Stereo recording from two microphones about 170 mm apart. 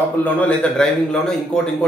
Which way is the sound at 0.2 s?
10° left (ahead or behind).